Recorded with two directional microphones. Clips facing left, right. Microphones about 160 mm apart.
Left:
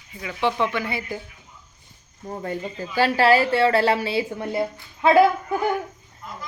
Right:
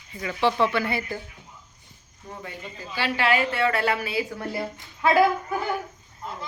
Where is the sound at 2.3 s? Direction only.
45° left (ahead or behind); by 5.2 s 25° left (ahead or behind).